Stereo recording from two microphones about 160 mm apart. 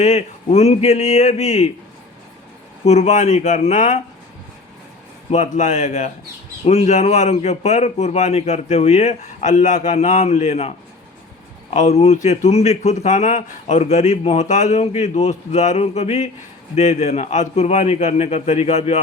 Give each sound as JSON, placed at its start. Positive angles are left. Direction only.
{"t": 0.0, "sound": "speech", "side_deg": 45}
{"t": 2.8, "sound": "speech", "side_deg": 45}
{"t": 5.3, "sound": "speech", "side_deg": 45}